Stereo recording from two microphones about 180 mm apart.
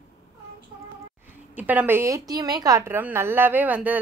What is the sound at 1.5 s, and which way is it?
A woman's voice, 10° right (ahead or behind).